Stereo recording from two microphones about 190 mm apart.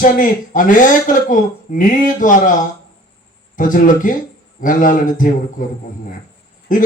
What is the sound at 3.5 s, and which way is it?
Speech, 45° left (ahead or behind).